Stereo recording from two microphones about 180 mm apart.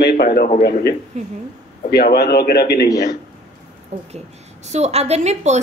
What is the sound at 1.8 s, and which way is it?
A man's voice, 60° left (ahead or behind).